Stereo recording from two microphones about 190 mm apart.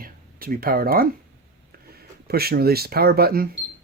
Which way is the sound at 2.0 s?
55° right (ahead or behind).